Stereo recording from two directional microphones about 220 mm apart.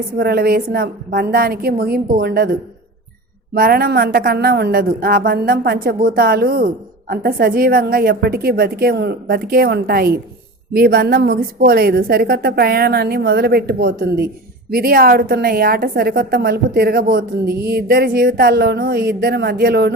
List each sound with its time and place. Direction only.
0.2 s a woman's voice: 45° right (ahead or behind)